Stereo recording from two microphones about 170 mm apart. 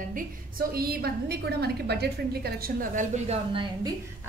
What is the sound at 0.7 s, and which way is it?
A woman's voice, 65° right (ahead or behind).